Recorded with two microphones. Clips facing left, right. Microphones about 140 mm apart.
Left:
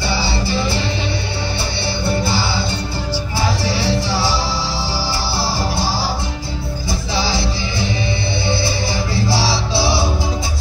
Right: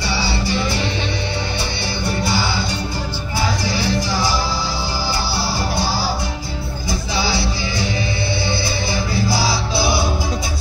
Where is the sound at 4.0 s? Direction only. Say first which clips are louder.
Left 1 dB; 25° left (ahead or behind).